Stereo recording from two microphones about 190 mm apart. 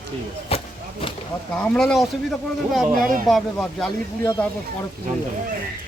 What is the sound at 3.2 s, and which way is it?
Speech, centre (ahead or behind).